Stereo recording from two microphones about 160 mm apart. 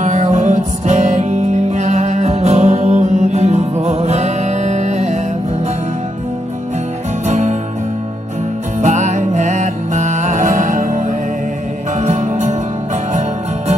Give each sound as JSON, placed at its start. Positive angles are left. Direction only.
{"t": 0.0, "sound": "music", "side_deg": -45}
{"t": 7.2, "sound": "music", "side_deg": -45}
{"t": 8.8, "sound": "music", "side_deg": -45}